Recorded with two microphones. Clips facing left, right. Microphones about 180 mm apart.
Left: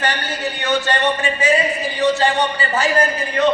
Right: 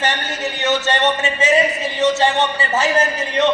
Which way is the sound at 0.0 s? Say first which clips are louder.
Even; 20° right (ahead or behind).